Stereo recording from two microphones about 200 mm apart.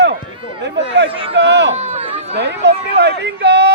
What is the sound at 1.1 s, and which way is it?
Speech, 25° right (ahead or behind).